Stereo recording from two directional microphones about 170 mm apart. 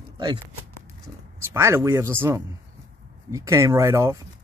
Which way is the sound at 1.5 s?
15° right (ahead or behind).